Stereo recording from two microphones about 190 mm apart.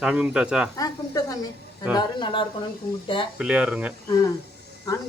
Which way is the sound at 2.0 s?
25° left (ahead or behind).